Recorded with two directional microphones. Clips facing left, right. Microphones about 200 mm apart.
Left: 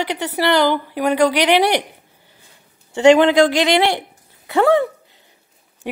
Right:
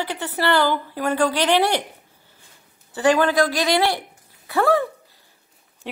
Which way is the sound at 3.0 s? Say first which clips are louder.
Left 7 dB; 20° left (ahead or behind).